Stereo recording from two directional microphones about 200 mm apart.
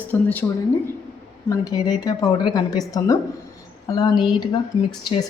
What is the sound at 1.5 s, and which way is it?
Speech, 20° left (ahead or behind).